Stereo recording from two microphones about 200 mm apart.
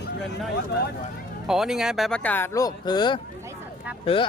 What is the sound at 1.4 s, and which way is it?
Speech, centre (ahead or behind).